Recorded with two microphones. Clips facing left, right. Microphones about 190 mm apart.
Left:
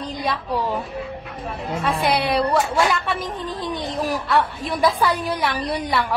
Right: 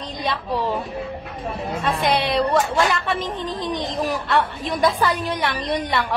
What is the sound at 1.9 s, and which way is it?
Speech, 10° left (ahead or behind).